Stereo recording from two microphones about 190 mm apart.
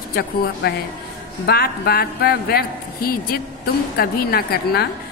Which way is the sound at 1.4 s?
55° left (ahead or behind).